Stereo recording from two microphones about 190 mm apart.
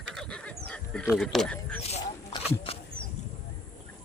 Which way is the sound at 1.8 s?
35° left (ahead or behind).